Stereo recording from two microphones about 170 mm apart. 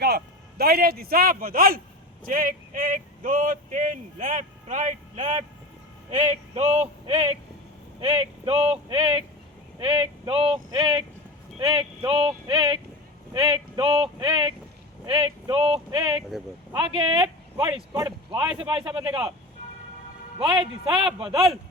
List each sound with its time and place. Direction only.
0.0 s speech: 65° right (ahead or behind); by 17.8 s 30° right (ahead or behind)
17.9 s speech: 20° right (ahead or behind)
18.6 s speech: 30° right (ahead or behind)
20.4 s speech: 30° right (ahead or behind)